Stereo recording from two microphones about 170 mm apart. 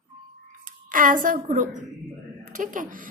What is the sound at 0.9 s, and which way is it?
A woman's voice, 55° right (ahead or behind).